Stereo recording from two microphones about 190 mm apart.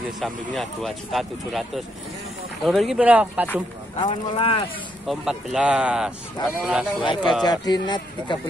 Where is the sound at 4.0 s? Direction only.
25° left (ahead or behind).